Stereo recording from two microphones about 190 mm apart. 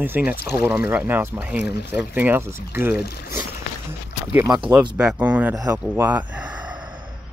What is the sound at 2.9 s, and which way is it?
Speech, 55° left (ahead or behind).